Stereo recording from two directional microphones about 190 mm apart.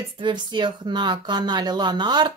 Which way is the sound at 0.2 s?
25° right (ahead or behind).